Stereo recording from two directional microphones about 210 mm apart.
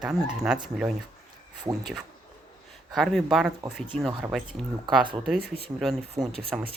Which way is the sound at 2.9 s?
Centre (ahead or behind).